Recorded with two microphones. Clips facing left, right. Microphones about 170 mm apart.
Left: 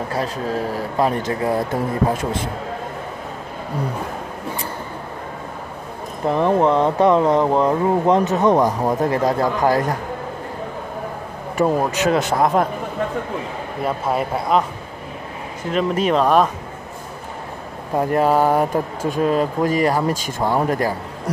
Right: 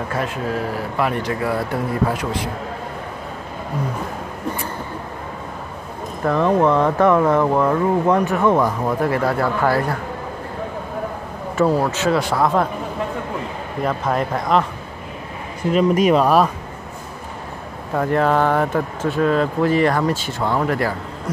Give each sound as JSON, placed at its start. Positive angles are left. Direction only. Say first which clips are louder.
{"t": 0.1, "sound": "speech", "louder": "even", "side_deg": 35}
{"t": 1.4, "sound": "speech", "louder": "left 3 dB", "side_deg": 20}
{"t": 6.2, "sound": "speech", "louder": "even", "side_deg": 20}
{"t": 11.5, "sound": "speech", "louder": "right 1 dB", "side_deg": 15}
{"t": 13.8, "sound": "a man's voice", "louder": "even", "side_deg": 5}
{"t": 15.7, "sound": "a man's voice", "louder": "right 3 dB", "side_deg": -5}
{"t": 17.9, "sound": "speech", "louder": "left 1 dB", "side_deg": 10}
{"t": 20.5, "sound": "speech", "louder": "left 1 dB", "side_deg": 25}